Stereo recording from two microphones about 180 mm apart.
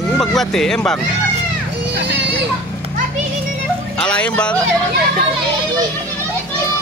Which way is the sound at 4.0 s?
5° left (ahead or behind).